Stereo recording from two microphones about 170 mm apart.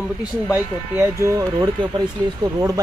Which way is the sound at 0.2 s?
10° right (ahead or behind).